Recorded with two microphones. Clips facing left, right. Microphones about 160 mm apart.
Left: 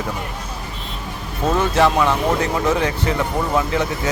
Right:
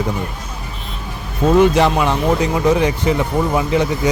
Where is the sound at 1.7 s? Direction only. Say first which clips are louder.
Right 1 dB; 20° right (ahead or behind).